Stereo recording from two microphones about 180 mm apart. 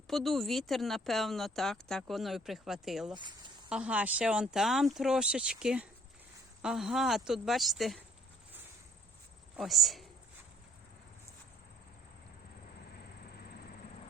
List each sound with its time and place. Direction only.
0.1 s speech: centre (ahead or behind)
3.2 s speech: 25° right (ahead or behind)
3.7 s speech: 5° right (ahead or behind)
9.6 s speech: centre (ahead or behind)